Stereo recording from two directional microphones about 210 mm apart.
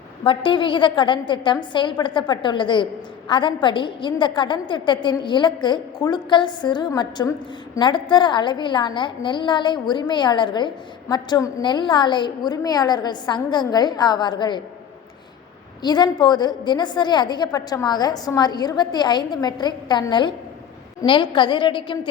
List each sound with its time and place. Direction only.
0.3 s a woman's voice: 25° left (ahead or behind)
15.8 s a woman's voice: 20° left (ahead or behind)